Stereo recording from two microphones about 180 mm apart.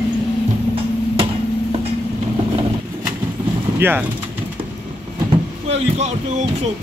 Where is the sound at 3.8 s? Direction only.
10° right (ahead or behind).